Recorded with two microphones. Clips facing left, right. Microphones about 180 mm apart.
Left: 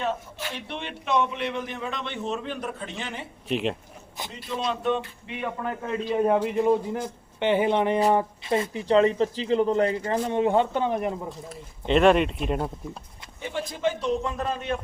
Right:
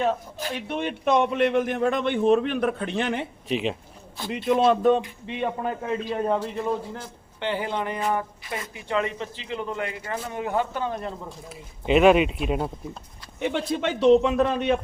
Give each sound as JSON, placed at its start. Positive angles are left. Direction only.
{"t": 0.3, "sound": "a man's voice", "side_deg": -40}
{"t": 3.5, "sound": "speech", "side_deg": 0}
{"t": 4.3, "sound": "a man's voice", "side_deg": -60}
{"t": 5.2, "sound": "speech", "side_deg": -30}
{"t": 6.1, "sound": "a man's voice", "side_deg": 15}
{"t": 11.3, "sound": "speech", "side_deg": -5}
{"t": 13.4, "sound": "a man's voice", "side_deg": -70}